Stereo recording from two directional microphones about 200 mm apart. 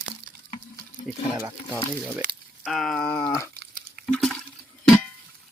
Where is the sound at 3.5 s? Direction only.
55° right (ahead or behind).